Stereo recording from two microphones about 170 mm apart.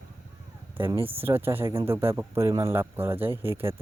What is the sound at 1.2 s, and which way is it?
Speech, 15° right (ahead or behind).